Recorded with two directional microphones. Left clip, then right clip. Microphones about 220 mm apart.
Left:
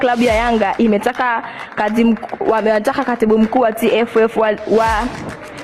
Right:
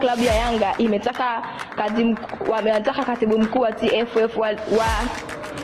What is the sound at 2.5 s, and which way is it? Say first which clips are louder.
Speech: left 5 dB; 40° left (ahead or behind).